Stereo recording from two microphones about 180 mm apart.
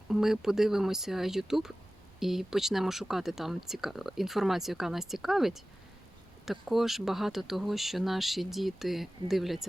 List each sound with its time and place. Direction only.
0.1 s speech: centre (ahead or behind)